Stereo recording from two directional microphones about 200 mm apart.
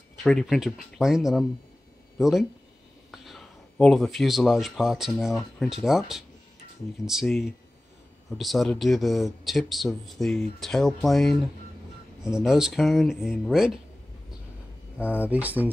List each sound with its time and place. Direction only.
0.2 s speech: centre (ahead or behind)
12.4 s speech: 5° right (ahead or behind)
15.0 s speech: 5° right (ahead or behind)